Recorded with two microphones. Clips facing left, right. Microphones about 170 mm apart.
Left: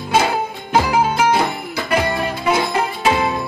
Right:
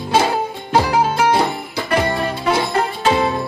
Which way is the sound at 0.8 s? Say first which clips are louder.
Even; 30° right (ahead or behind).